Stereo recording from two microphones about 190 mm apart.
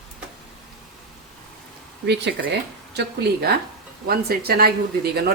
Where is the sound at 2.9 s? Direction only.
60° right (ahead or behind).